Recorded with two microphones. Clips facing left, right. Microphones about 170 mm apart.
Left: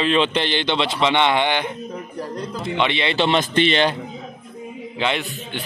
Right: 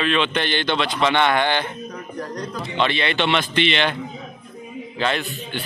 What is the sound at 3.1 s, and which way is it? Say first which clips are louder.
Speech: left 2 dB; 35° left (ahead or behind).